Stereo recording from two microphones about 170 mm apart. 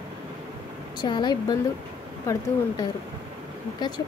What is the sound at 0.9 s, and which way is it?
Speech, 25° left (ahead or behind).